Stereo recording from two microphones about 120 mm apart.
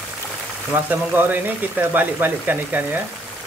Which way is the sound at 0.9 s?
15° right (ahead or behind).